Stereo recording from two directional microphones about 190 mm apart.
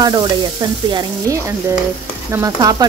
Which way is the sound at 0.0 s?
20° right (ahead or behind).